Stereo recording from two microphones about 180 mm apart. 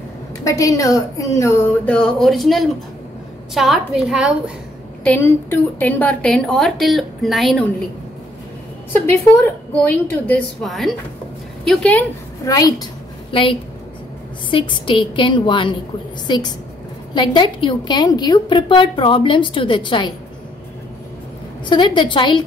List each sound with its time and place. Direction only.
0.4 s a woman's voice: 15° left (ahead or behind); by 4.4 s 5° right (ahead or behind)
5.0 s a woman's voice: 10° left (ahead or behind)
8.9 s a woman's voice: 10° left (ahead or behind)
12.4 s a woman's voice: 20° left (ahead or behind)
21.6 s a woman's voice: 25° left (ahead or behind)